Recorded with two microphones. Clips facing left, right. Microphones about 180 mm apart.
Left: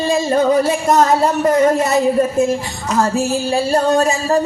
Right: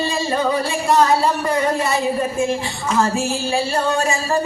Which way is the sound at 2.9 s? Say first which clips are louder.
Left 3 dB; 40° left (ahead or behind).